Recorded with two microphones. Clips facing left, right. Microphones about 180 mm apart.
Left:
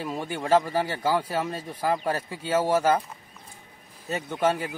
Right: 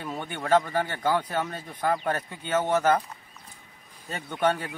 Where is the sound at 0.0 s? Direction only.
5° left (ahead or behind).